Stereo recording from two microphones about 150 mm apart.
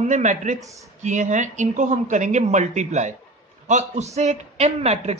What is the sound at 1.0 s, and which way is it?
A man's voice, 55° right (ahead or behind).